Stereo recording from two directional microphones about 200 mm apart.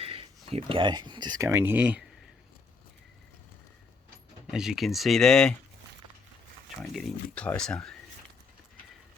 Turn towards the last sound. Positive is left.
turn(degrees=5)  # may be behind; listen again after turning